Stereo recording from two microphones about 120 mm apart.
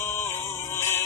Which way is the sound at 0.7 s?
20° left (ahead or behind).